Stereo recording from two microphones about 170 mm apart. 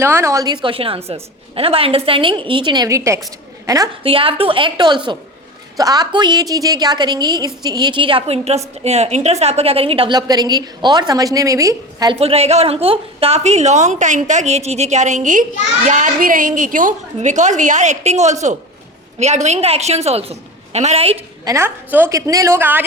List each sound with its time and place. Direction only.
0.0 s a woman's voice: 15° right (ahead or behind)
4.0 s a woman's voice: 30° right (ahead or behind)
12.2 s a woman's voice: 35° right (ahead or behind)
21.4 s a woman's voice: 15° right (ahead or behind)